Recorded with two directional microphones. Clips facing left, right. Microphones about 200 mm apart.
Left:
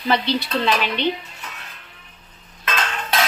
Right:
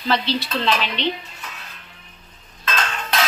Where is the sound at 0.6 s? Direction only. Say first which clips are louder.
Left 1 dB; 10° left (ahead or behind).